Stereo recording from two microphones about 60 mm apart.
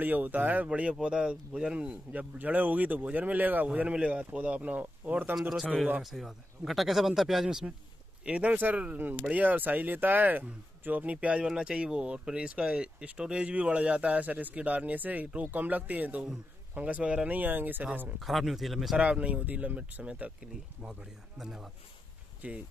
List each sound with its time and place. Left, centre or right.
0.0 s speech: right
6.0 s a man's voice: centre
7.4 s a man's voice: centre
8.3 s speech: right
17.4 s speech: right
18.2 s a man's voice: centre
18.9 s speech: right
21.4 s a man's voice: centre
22.4 s speech: right